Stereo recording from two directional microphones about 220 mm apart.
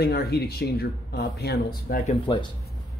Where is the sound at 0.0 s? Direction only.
45° left (ahead or behind).